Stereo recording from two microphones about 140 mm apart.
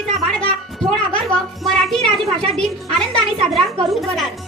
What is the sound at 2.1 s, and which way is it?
Speech, 45° right (ahead or behind).